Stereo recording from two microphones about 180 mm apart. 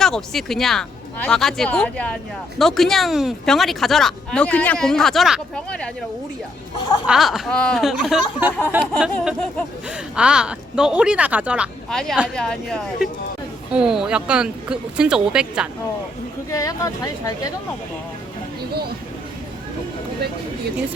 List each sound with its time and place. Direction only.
0.0 s speech: centre (ahead or behind)
6.7 s speech: 25° left (ahead or behind)
7.1 s speech: centre (ahead or behind)
16.5 s speech: 20° left (ahead or behind)